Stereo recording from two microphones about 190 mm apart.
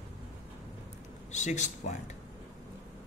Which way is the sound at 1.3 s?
40° left (ahead or behind).